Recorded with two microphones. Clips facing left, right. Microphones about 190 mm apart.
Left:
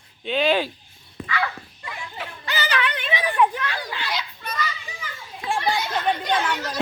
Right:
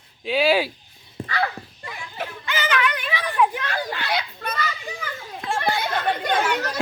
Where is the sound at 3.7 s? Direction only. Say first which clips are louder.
Right 4 dB; 55° right (ahead or behind).